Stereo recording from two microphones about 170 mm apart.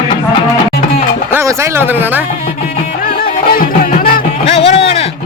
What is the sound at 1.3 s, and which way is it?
Speech, 15° right (ahead or behind).